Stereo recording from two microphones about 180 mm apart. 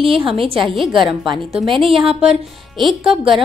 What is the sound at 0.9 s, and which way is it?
A woman's voice, 25° right (ahead or behind).